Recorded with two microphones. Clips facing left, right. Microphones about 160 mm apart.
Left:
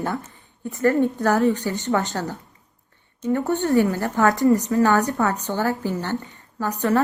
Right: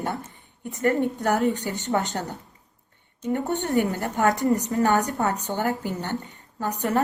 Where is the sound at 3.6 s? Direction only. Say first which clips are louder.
Left 4 dB; 20° right (ahead or behind).